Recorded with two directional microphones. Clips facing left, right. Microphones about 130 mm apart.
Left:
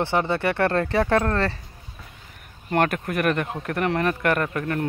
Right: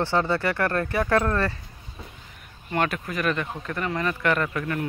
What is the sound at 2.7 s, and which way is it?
Speech, 50° left (ahead or behind).